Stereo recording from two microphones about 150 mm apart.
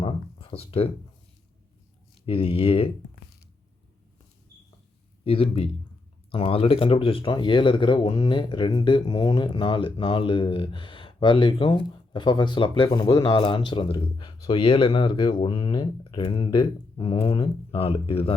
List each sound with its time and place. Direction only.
0.0 s a sound: 35° left (ahead or behind)
2.2 s speech: 40° left (ahead or behind)
5.2 s speech: 40° left (ahead or behind)